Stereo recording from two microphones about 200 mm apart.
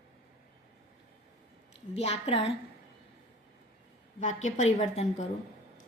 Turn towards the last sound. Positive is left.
turn(degrees=35)  # may be behind; listen again after turning